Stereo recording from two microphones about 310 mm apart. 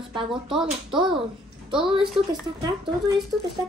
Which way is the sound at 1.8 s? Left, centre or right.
Centre.